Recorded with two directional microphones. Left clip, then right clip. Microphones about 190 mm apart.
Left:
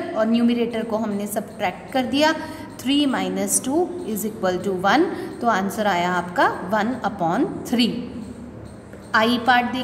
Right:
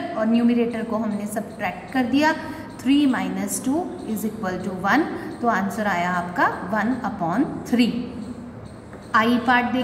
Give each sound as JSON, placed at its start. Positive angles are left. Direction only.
{"t": 0.2, "sound": "a woman's voice", "side_deg": 40}
{"t": 9.1, "sound": "a woman's voice", "side_deg": 45}